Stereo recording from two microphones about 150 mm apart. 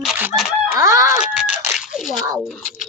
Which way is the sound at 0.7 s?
20° right (ahead or behind).